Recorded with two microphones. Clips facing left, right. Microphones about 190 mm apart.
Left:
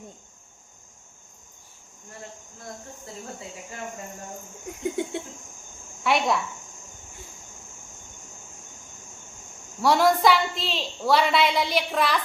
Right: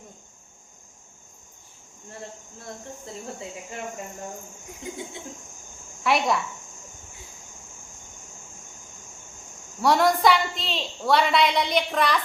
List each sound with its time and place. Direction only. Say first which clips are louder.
4.7 s cricket: left 8 dB; 65° left (ahead or behind)
6.0 s speech: even; centre (ahead or behind)
9.8 s a woman's voice: even; centre (ahead or behind)